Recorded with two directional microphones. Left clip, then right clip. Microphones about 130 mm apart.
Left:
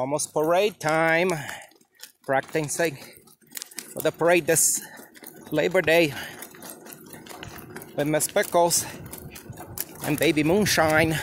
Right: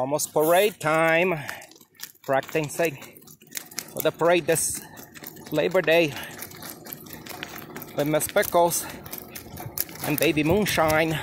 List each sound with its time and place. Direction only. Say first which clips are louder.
0.0 s speech: right 2 dB; 5° left (ahead or behind); by 6.3 s 20° left (ahead or behind)
7.7 s a sound: even; 5° left (ahead or behind)
8.4 s speech: even; 5° left (ahead or behind)
10.0 s speech: even; 20° left (ahead or behind)